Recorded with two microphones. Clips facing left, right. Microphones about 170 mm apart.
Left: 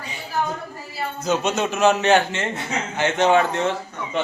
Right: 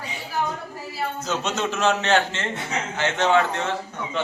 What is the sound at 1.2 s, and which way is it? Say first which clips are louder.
A man's voice: left 6 dB; 15° left (ahead or behind).